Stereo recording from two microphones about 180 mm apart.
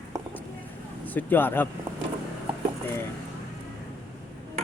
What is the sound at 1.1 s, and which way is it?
Speech, 10° left (ahead or behind).